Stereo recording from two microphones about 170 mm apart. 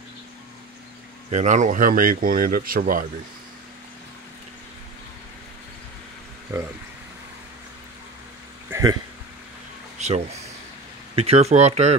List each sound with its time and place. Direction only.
1.3 s speech: 45° right (ahead or behind)
6.5 s speech: 20° right (ahead or behind)
8.6 s a sound: 20° right (ahead or behind)
11.1 s speech: 35° right (ahead or behind)